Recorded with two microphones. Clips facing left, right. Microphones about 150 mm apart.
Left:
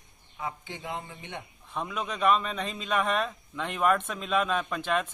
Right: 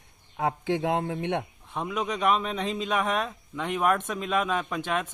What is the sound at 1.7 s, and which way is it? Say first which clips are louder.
A man's voice: right 3 dB; 15° right (ahead or behind).